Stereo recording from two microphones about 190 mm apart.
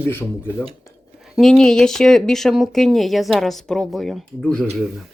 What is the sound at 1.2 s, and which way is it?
Speech, centre (ahead or behind).